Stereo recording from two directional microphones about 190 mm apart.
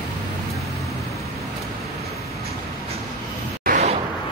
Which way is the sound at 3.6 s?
40° right (ahead or behind).